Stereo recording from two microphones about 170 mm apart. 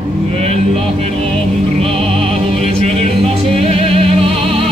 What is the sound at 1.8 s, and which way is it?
Music, 35° right (ahead or behind).